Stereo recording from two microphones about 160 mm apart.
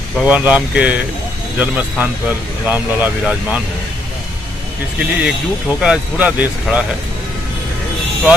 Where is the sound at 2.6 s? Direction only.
10° right (ahead or behind).